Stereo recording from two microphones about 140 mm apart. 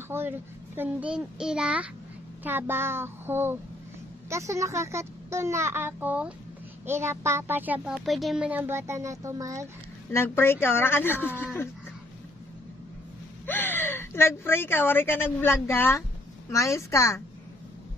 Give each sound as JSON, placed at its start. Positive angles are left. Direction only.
{"t": 0.1, "sound": "a child's voice", "side_deg": -15}
{"t": 10.1, "sound": "speech", "side_deg": 15}
{"t": 13.5, "sound": "a woman's voice", "side_deg": 15}